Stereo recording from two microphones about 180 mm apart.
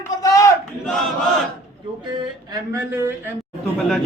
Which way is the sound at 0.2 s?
15° left (ahead or behind).